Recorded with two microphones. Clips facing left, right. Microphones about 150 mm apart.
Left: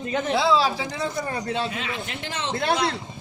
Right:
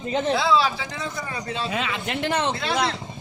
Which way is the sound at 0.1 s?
25° right (ahead or behind).